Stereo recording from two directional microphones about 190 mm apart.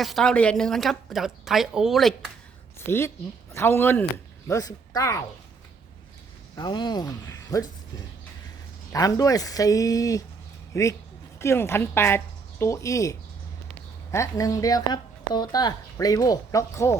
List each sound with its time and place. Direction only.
0.0 s a woman's voice: centre (ahead or behind)
3.5 s speech: 15° left (ahead or behind)
6.6 s speech: 25° left (ahead or behind)
8.9 s speech: 20° left (ahead or behind)